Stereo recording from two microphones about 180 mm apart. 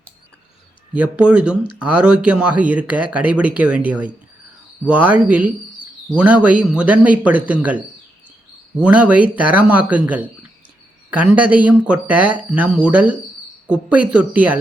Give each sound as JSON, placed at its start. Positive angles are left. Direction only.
{"t": 0.9, "sound": "speech", "side_deg": -5}